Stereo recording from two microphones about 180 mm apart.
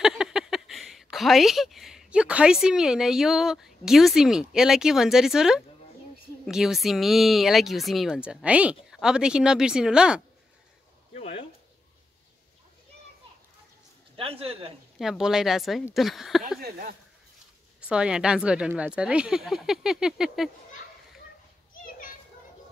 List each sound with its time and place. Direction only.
0.0 s speech: 5° right (ahead or behind)
11.1 s speech: 40° left (ahead or behind)
14.1 s a man's voice: 30° right (ahead or behind)
15.0 s speech: centre (ahead or behind)
17.7 s speech: 5° right (ahead or behind)